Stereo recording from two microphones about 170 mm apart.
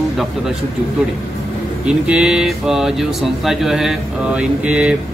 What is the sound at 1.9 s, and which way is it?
Speech, 5° right (ahead or behind).